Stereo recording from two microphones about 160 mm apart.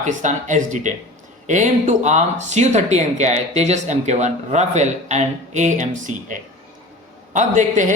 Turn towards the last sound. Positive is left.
turn(degrees=-50)  # may be behind; listen again after turning